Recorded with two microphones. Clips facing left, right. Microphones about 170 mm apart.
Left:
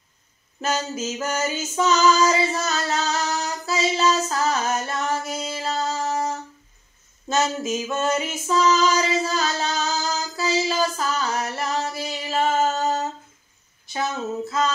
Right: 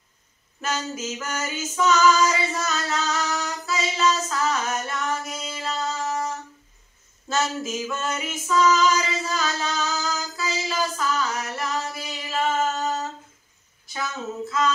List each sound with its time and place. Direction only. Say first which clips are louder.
0.6 s female singing: left 3 dB; 25° left (ahead or behind)